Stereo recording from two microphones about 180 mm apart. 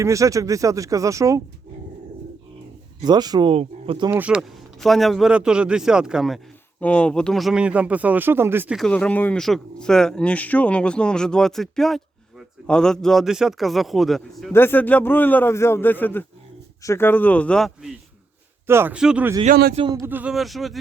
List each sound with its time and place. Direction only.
0.0 s speech: 15° right (ahead or behind)
3.0 s speech: 25° right (ahead or behind)
4.1 s speech: 5° right (ahead or behind)
8.8 s speech: 5° left (ahead or behind)
14.5 s a man's voice: 10° left (ahead or behind)
18.7 s speech: 10° right (ahead or behind)
19.7 s speech: 25° right (ahead or behind)
20.1 s speech: 10° right (ahead or behind)